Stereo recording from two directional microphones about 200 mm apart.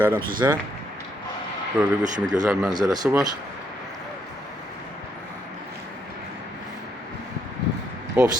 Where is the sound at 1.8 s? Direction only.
10° right (ahead or behind).